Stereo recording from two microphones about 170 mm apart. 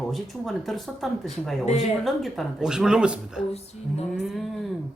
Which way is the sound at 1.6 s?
40° left (ahead or behind).